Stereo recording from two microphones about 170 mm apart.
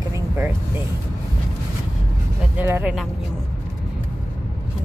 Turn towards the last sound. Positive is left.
turn(degrees=-10)  # may be behind; listen again after turning